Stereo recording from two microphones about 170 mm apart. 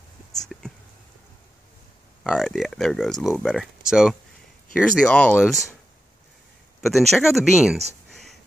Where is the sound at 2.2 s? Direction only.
5° left (ahead or behind).